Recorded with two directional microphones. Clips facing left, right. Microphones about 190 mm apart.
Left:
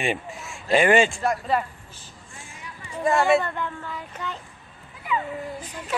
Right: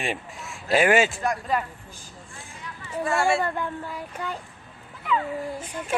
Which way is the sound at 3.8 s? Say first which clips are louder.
Right 1 dB; 10° right (ahead or behind).